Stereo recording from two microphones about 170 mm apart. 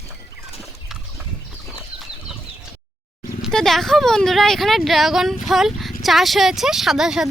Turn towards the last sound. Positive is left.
turn(degrees=-5)  # may be behind; listen again after turning